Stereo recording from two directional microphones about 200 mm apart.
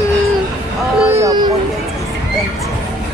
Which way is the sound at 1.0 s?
15° right (ahead or behind).